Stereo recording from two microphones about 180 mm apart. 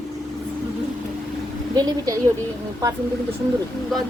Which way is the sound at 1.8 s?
20° right (ahead or behind).